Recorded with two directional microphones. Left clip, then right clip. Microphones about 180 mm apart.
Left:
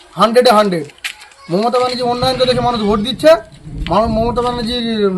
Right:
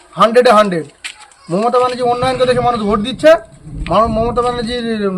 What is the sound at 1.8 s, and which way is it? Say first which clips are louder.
Speech: right 4 dB; 25° right (ahead or behind).